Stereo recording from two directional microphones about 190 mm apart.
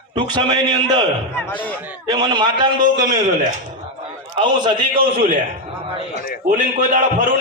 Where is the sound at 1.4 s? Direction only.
10° left (ahead or behind).